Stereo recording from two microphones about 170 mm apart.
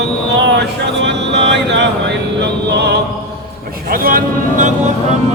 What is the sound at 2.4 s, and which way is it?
Speech, 80° right.